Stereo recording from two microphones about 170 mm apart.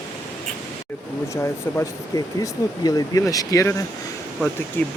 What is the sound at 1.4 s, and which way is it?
Speech, 15° left (ahead or behind).